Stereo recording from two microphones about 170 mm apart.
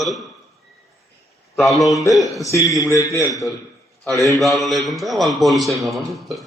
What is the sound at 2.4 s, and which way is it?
Speech, 20° left (ahead or behind).